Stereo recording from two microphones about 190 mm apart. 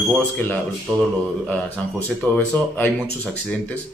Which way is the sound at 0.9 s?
Centre (ahead or behind).